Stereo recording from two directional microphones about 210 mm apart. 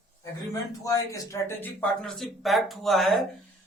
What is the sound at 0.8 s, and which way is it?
Speech, 15° left (ahead or behind).